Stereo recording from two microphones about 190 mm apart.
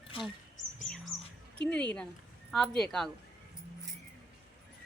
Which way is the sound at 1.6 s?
5° left (ahead or behind).